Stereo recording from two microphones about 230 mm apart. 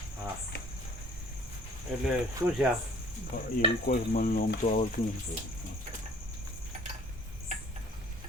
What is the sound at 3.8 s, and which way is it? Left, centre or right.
Cricket, left.